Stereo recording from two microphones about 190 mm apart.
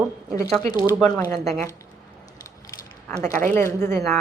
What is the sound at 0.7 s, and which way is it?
Speech, 20° left (ahead or behind).